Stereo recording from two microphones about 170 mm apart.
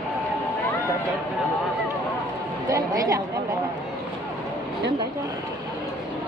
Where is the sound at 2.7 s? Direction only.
20° right (ahead or behind).